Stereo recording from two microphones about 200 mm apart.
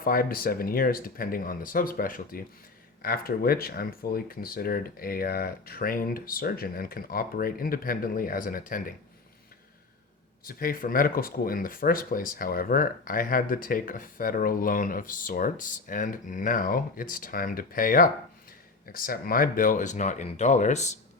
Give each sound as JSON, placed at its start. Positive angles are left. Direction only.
{"t": 0.0, "sound": "speech", "side_deg": 45}
{"t": 10.4, "sound": "speech", "side_deg": 45}